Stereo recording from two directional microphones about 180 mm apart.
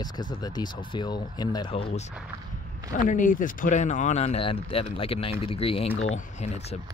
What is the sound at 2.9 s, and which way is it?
Speech, 45° left (ahead or behind).